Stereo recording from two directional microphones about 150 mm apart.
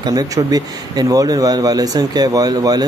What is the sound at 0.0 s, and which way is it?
Speech, 25° right (ahead or behind).